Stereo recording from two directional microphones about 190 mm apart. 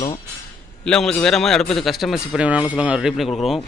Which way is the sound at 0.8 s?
5° left (ahead or behind).